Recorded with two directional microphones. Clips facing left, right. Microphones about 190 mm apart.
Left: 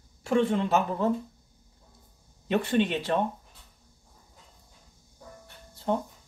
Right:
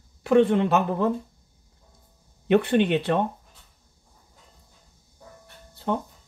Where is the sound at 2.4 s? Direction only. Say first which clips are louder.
Right 5 dB; 60° right (ahead or behind).